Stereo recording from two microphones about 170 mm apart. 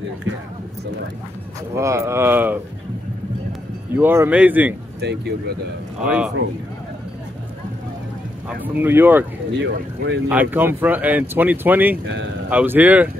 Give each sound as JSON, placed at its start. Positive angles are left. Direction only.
{"t": 1.8, "sound": "speech", "side_deg": -15}
{"t": 3.9, "sound": "speech", "side_deg": -15}
{"t": 5.0, "sound": "speech", "side_deg": -75}
{"t": 6.0, "sound": "speech", "side_deg": -5}
{"t": 8.5, "sound": "speech", "side_deg": -10}
{"t": 9.6, "sound": "speech", "side_deg": -90}
{"t": 10.2, "sound": "speech", "side_deg": -10}